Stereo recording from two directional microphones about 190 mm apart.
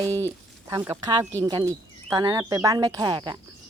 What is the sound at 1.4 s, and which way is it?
Speech, 20° right (ahead or behind).